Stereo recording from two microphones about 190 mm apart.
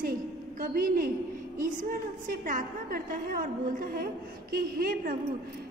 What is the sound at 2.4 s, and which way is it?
A woman's voice, 45° right (ahead or behind).